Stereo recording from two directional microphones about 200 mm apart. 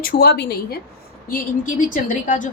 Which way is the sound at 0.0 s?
45° left (ahead or behind).